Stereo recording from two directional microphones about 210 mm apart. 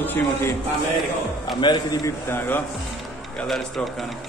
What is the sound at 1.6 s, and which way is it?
A man's voice, 15° left (ahead or behind).